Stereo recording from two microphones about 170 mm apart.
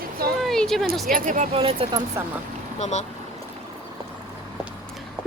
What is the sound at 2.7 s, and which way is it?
Speech, 45° left (ahead or behind).